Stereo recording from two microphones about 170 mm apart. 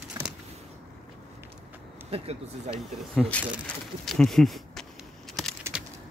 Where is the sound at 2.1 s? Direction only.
40° right (ahead or behind).